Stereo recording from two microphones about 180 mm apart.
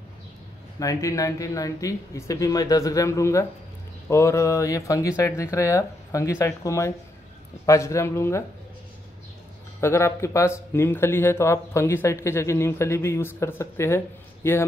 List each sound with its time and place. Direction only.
0.7 s speech: 20° left (ahead or behind)
9.8 s speech: 15° left (ahead or behind)